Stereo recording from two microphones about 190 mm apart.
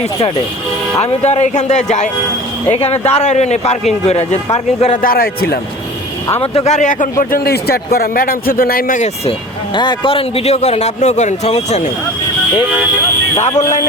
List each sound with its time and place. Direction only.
0.9 s speech: 35° left (ahead or behind)
5.0 s speech: 50° left (ahead or behind)
6.4 s speech: 30° left (ahead or behind); by 9.0 s 50° left (ahead or behind)
9.7 s speech: 25° left (ahead or behind)